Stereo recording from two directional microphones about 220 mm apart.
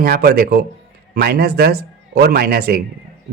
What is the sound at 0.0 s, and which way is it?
A man's voice, 45° right (ahead or behind).